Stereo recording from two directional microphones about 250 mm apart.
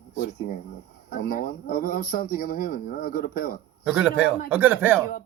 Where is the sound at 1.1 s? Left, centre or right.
Left.